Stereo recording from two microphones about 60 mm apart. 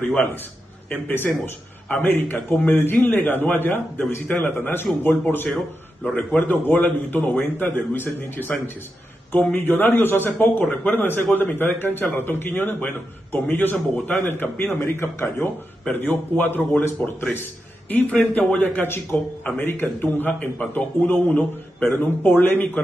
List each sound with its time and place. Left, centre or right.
0.0 s a man's voice: left
1.4 s a man's voice: left
18.3 s a man's voice: centre
18.6 s a man's voice: left